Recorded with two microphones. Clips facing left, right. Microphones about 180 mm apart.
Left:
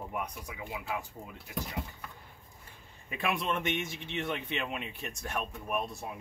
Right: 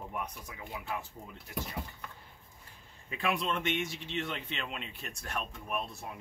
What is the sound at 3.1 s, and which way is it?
A man's voice, 20° left (ahead or behind).